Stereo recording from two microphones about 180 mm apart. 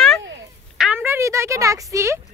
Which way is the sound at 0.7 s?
5° right (ahead or behind).